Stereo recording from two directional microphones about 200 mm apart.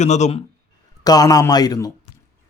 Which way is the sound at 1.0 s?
20° left (ahead or behind).